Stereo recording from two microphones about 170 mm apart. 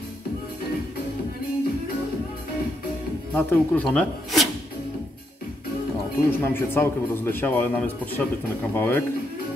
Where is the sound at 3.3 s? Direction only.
10° left (ahead or behind).